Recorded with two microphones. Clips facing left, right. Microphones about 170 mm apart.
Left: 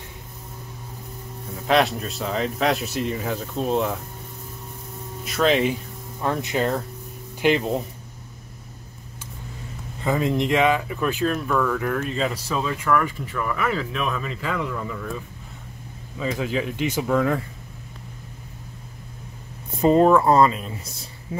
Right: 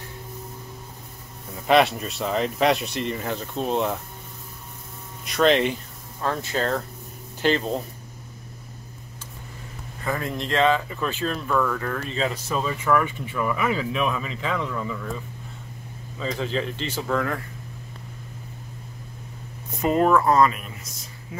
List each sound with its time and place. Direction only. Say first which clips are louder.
1.5 s speech: right 1 dB; centre (ahead or behind)
5.2 s speech: right 1 dB; centre (ahead or behind)
6.2 s speech: left 2 dB; 15° left (ahead or behind)
10.0 s speech: left 6 dB; 20° left (ahead or behind); by 15.0 s 5° left (ahead or behind)
16.2 s speech: left 2 dB; 5° left (ahead or behind)
19.8 s speech: left 4 dB; 30° left (ahead or behind)